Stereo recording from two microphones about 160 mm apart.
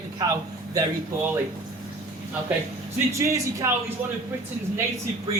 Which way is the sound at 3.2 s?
20° right (ahead or behind).